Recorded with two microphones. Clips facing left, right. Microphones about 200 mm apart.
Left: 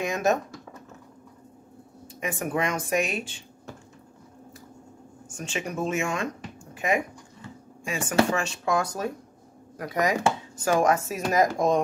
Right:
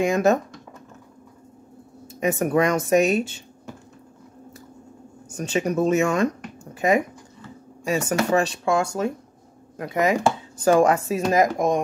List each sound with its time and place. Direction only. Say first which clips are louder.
0.0 s speech: right 6 dB; 30° right (ahead or behind)
2.1 s speech: right 8 dB; 40° right (ahead or behind)
5.3 s speech: right 9 dB; 40° right (ahead or behind); by 11.8 s 15° right (ahead or behind)